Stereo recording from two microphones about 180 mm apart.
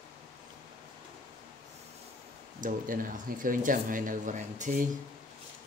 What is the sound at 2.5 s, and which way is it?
Speech, 50° right (ahead or behind).